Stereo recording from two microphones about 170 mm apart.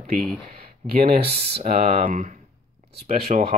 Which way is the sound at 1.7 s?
50° right (ahead or behind).